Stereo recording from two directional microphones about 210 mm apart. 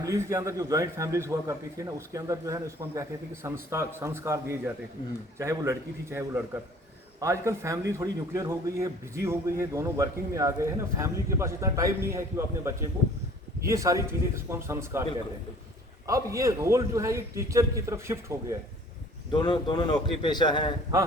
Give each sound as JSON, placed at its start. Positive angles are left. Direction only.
{"t": 0.0, "sound": "a man's voice", "side_deg": -15}
{"t": 16.0, "sound": "a man's voice", "side_deg": -15}
{"t": 19.3, "sound": "speech", "side_deg": 20}